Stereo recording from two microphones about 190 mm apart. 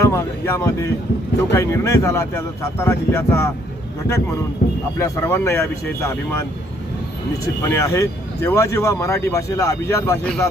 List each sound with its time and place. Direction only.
0.0 s speech: 15° left (ahead or behind)
4.6 s music: 55° left (ahead or behind)
4.9 s speech: 15° left (ahead or behind)
7.6 s speech: 15° left (ahead or behind)